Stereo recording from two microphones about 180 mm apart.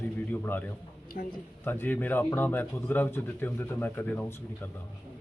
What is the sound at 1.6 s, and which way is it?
Speech, 10° left (ahead or behind).